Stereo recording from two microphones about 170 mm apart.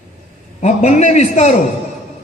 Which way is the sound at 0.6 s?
40° left (ahead or behind).